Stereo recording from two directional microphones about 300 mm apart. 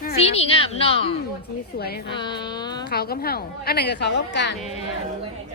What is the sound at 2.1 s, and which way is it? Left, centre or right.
Speech, centre.